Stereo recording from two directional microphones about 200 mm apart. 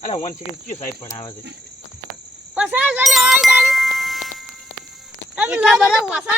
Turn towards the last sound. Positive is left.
turn(degrees=-5)  # may be behind; listen again after turning